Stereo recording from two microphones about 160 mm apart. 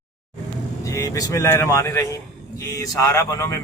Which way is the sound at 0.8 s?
20° left (ahead or behind).